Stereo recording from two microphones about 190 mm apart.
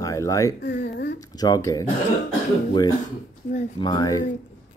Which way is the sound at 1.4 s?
20° left (ahead or behind).